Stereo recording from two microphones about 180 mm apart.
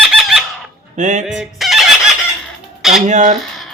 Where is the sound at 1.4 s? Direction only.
Centre (ahead or behind).